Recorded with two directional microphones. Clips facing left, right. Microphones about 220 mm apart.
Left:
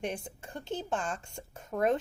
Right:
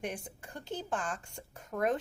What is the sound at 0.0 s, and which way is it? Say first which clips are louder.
Speech: left 3 dB; 25° left (ahead or behind).